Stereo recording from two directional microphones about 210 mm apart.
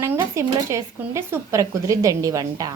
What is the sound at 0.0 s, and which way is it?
Speech, 15° right (ahead or behind).